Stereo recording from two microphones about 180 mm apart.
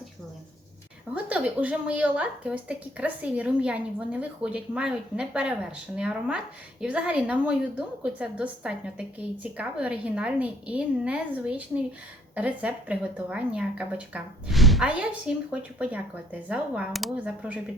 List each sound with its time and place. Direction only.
1.1 s a woman's voice: 10° right (ahead or behind)